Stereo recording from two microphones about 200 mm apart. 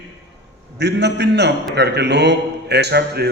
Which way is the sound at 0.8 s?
60° right (ahead or behind).